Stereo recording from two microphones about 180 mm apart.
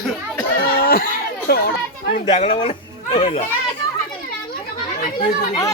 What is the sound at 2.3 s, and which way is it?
Speech, 30° left (ahead or behind).